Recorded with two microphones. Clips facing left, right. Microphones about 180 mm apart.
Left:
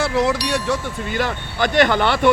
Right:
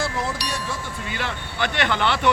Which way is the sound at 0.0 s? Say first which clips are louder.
Left 8 dB; 75° left (ahead or behind).